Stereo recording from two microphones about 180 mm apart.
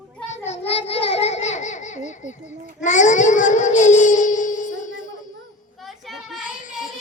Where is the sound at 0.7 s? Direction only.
35° left (ahead or behind).